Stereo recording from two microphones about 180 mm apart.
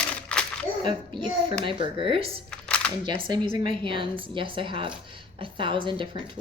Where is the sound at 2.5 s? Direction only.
5° left (ahead or behind).